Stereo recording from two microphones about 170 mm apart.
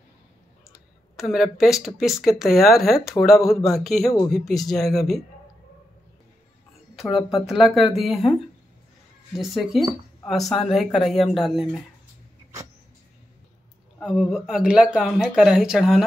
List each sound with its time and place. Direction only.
1.1 s speech: centre (ahead or behind)
7.1 s speech: 30° left (ahead or behind)
7.4 s speech: centre (ahead or behind)
9.4 s speech: centre (ahead or behind)
14.0 s speech: centre (ahead or behind)